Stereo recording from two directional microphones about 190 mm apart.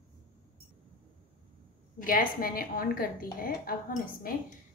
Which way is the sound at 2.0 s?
50° left (ahead or behind).